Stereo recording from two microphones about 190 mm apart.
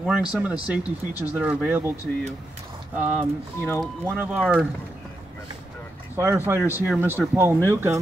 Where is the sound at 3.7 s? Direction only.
10° right (ahead or behind).